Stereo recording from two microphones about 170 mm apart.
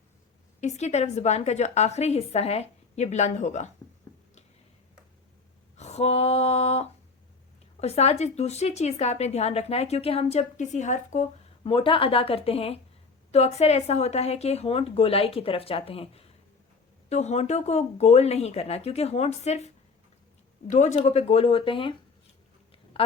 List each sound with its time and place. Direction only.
0.6 s a woman's voice: 40° left (ahead or behind)
5.7 s female singing: 40° left (ahead or behind)
7.8 s a woman's voice: 40° left (ahead or behind)
11.6 s a woman's voice: 30° left (ahead or behind)